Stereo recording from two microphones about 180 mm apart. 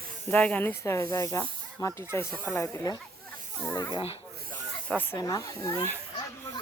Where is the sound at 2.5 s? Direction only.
15° left (ahead or behind).